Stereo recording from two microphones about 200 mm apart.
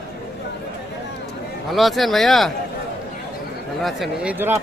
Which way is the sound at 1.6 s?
Centre (ahead or behind).